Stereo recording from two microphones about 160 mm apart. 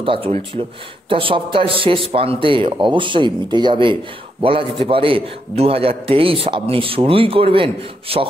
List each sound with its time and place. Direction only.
0.0 s a man's voice: 35° right (ahead or behind)